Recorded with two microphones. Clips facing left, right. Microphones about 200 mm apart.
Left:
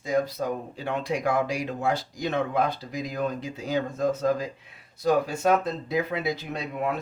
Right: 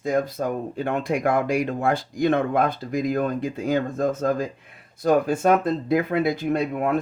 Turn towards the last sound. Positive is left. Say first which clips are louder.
# right 7 dB
turn(degrees=-50)  # may be behind; listen again after turning